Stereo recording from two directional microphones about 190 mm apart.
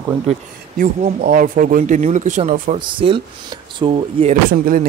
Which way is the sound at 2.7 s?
30° right (ahead or behind).